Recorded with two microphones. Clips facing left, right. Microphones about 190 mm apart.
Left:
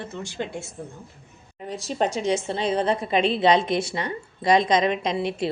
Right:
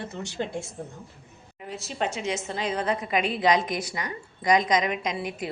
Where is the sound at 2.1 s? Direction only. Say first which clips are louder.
Left 6 dB; 30° left (ahead or behind).